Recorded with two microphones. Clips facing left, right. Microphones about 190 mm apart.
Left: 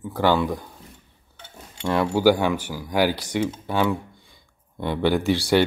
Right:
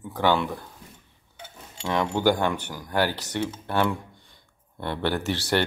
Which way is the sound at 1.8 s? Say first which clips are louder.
Left 4 dB; 5° left (ahead or behind).